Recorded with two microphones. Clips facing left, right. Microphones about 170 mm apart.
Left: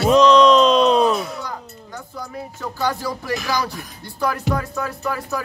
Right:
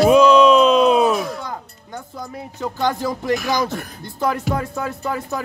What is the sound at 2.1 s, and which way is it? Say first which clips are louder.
Speech: left 2 dB; 20° right (ahead or behind).